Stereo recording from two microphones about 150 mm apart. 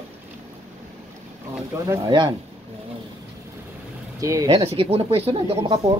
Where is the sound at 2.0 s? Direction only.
30° right (ahead or behind).